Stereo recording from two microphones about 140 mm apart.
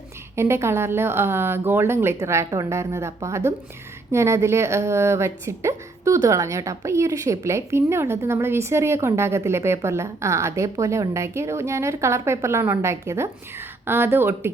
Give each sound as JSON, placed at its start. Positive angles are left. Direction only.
{"t": 0.3, "sound": "a woman's voice", "side_deg": -20}